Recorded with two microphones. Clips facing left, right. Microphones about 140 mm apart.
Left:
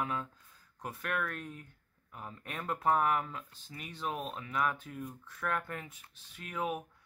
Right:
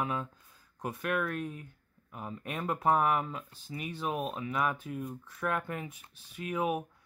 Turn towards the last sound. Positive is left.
turn(degrees=-15)  # may be behind; listen again after turning